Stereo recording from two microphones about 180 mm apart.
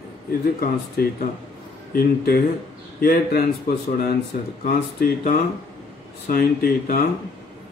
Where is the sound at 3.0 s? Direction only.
55° left (ahead or behind).